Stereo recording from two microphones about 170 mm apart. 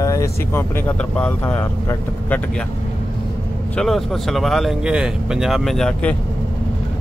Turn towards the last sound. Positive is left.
turn(degrees=5)  # may be behind; listen again after turning